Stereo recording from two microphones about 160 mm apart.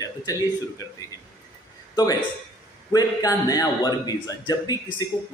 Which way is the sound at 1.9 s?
25° left (ahead or behind).